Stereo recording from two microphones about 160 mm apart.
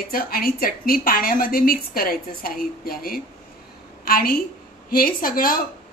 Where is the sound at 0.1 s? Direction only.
65° left (ahead or behind).